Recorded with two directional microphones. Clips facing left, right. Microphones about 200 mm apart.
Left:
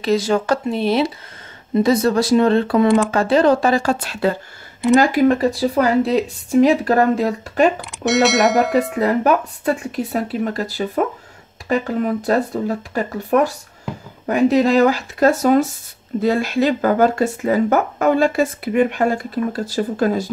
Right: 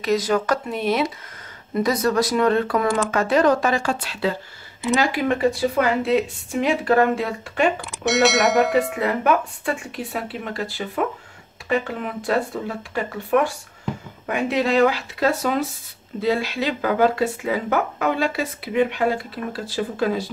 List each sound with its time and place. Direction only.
0.0 s speech: 30° left (ahead or behind)
7.8 s speech: centre (ahead or behind)
9.0 s speech: 40° left (ahead or behind)